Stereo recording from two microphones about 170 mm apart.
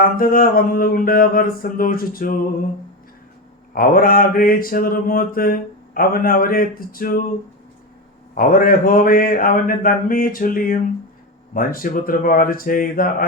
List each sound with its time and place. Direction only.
0.0 s mantra: 55° left (ahead or behind)
3.7 s mantra: 55° left (ahead or behind)
8.4 s mantra: 55° left (ahead or behind)